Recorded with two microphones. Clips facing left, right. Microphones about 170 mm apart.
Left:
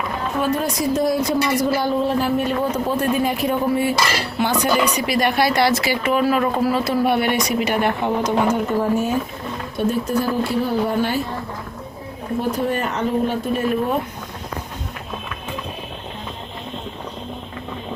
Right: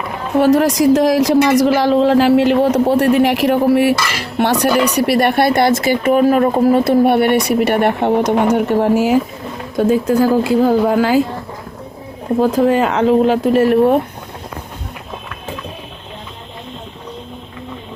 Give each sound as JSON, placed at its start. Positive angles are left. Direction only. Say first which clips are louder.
{"t": 0.3, "sound": "a woman's voice", "louder": "right 11 dB", "side_deg": -85}
{"t": 12.6, "sound": "speech", "louder": "right 9 dB", "side_deg": -90}